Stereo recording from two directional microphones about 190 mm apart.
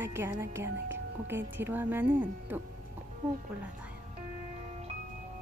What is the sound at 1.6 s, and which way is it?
Speech, 10° right (ahead or behind).